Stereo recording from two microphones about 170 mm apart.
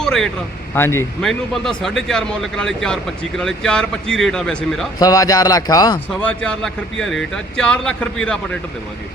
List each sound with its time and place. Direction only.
0.0 s speech: 5° left (ahead or behind)
0.7 s speech: 15° left (ahead or behind)
1.2 s speech: centre (ahead or behind)
4.9 s speech: 20° left (ahead or behind)
6.1 s speech: 5° left (ahead or behind)